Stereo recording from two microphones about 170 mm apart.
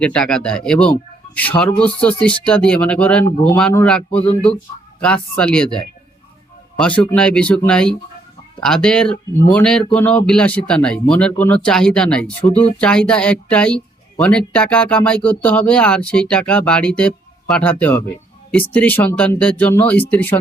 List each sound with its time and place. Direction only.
0.0 s a man's voice: 5° left (ahead or behind)